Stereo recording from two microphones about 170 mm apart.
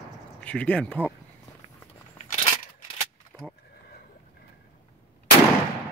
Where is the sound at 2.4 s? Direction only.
50° left (ahead or behind).